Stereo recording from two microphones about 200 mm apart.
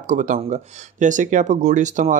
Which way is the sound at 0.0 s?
40° right (ahead or behind).